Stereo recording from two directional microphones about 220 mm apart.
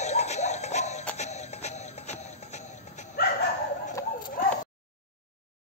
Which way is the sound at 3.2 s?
45° left (ahead or behind).